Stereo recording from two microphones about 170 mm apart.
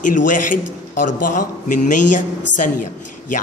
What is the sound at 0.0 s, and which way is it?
A man's voice, 50° left (ahead or behind).